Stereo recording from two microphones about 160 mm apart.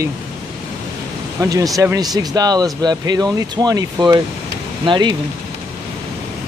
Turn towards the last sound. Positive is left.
turn(degrees=-30)  # may be behind; listen again after turning